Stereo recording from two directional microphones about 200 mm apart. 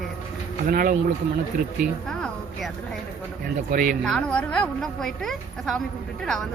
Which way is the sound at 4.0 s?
5° left (ahead or behind).